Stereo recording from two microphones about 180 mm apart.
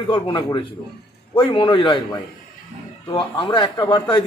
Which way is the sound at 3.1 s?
25° left (ahead or behind).